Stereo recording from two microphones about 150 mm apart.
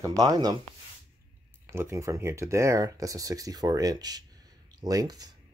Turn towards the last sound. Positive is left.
turn(degrees=-25)  # may be behind; listen again after turning